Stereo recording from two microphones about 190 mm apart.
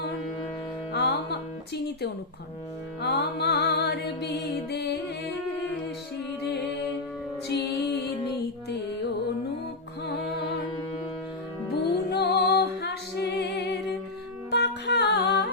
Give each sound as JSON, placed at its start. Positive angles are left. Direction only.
{"t": 0.9, "sound": "music", "side_deg": 60}
{"t": 7.4, "sound": "music", "side_deg": 60}
{"t": 11.7, "sound": "music", "side_deg": 60}